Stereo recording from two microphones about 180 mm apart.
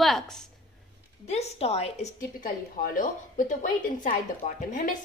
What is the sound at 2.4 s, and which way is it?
A woman's voice, 50° left (ahead or behind).